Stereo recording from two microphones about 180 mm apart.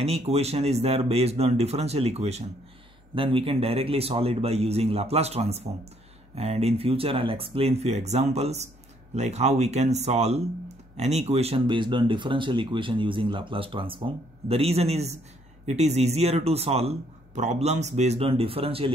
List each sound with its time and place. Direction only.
0.0 s a man's voice: 35° right (ahead or behind)